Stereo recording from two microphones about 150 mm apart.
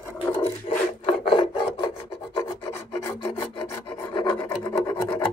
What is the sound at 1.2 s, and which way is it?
Filing, 35° left (ahead or behind).